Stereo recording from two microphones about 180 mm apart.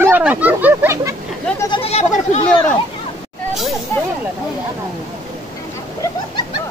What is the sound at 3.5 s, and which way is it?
Snake, centre (ahead or behind).